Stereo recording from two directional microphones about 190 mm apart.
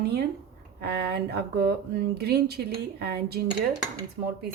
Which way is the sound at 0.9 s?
60° right (ahead or behind).